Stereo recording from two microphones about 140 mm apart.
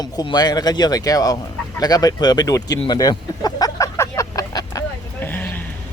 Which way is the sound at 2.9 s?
30° left (ahead or behind).